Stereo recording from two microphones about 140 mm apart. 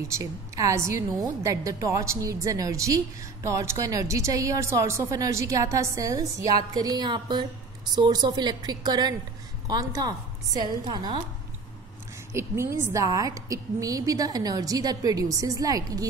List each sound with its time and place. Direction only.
0.1 s a woman's voice: 25° right (ahead or behind)
12.3 s a woman's voice: 20° right (ahead or behind)